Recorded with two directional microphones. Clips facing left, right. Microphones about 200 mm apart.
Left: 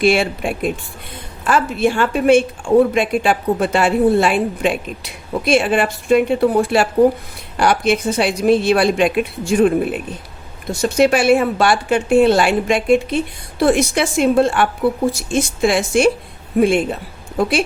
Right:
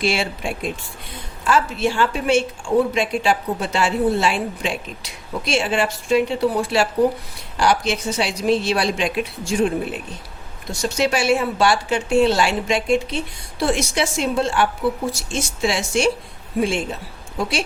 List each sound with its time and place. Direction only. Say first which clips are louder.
0.0 s a woman's voice: left 7 dB; 55° left (ahead or behind)